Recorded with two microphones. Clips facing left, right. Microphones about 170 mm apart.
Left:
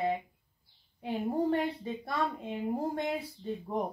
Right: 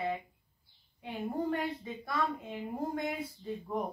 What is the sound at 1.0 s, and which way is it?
A woman's voice, 30° left (ahead or behind).